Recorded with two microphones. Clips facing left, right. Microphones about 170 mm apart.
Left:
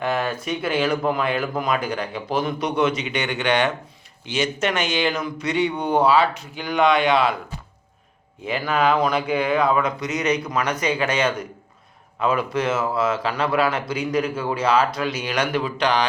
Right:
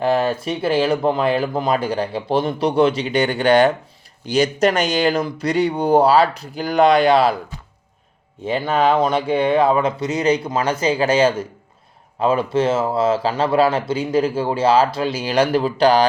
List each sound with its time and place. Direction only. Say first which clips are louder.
0.0 s speech: right 6 dB; 30° right (ahead or behind)
8.4 s speech: right 3 dB; 30° right (ahead or behind)